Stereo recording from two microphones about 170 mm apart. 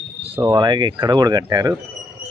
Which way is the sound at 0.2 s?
35° right (ahead or behind).